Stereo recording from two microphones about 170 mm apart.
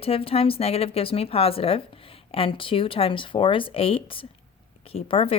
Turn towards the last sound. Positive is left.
turn(degrees=35)  # may be behind; listen again after turning